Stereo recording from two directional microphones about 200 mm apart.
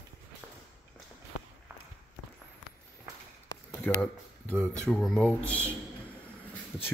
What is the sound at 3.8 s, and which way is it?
Speech, 5° left (ahead or behind).